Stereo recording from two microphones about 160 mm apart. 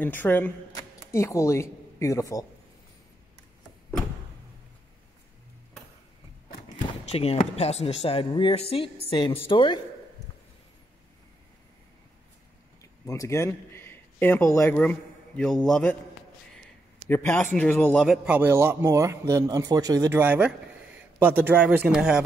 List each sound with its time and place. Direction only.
0.0 s speech: 10° left (ahead or behind)
7.1 s speech: 40° left (ahead or behind)
13.0 s a man's voice: 20° left (ahead or behind)
17.1 s a man's voice: 15° left (ahead or behind); by 22.2 s 5° right (ahead or behind)